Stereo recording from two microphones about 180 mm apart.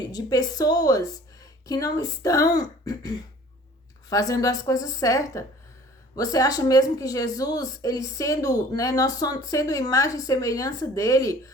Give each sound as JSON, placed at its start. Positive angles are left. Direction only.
{"t": 0.1, "sound": "a woman's voice", "side_deg": 20}